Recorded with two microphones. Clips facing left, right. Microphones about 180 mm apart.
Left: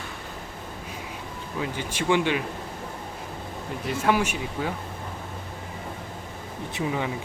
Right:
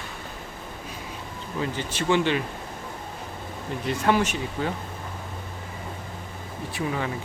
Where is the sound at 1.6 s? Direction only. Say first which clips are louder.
Right 1 dB; 10° left (ahead or behind).